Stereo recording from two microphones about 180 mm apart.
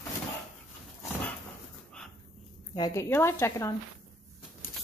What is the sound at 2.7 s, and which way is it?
A woman's voice, 20° left (ahead or behind).